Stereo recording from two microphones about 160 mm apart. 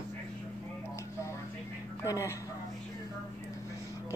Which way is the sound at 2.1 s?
20° left (ahead or behind).